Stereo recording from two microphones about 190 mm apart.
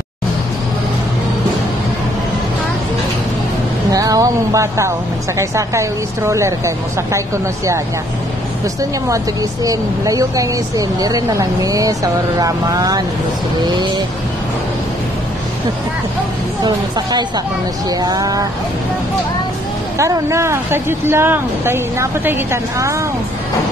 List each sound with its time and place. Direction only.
3.9 s speech: 20° right (ahead or behind)
9.7 s speech: 20° right (ahead or behind)
18.0 s speech: 20° right (ahead or behind)
20.0 s speech: 15° right (ahead or behind)